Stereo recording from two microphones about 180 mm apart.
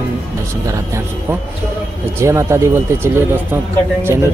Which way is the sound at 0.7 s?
15° right (ahead or behind).